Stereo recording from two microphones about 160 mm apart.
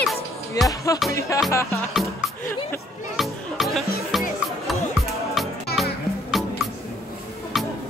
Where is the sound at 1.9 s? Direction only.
Centre (ahead or behind).